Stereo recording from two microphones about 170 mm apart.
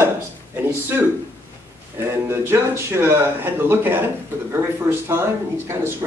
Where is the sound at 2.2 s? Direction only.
15° right (ahead or behind).